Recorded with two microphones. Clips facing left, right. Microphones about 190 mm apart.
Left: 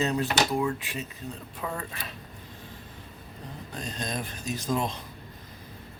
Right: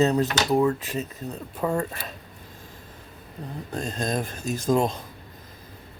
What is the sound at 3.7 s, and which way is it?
Speech, 45° right (ahead or behind).